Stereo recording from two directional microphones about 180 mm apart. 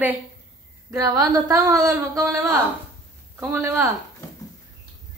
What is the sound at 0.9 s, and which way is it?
A woman's voice, 20° right (ahead or behind).